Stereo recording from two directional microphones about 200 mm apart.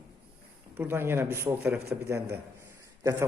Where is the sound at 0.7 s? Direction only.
10° right (ahead or behind).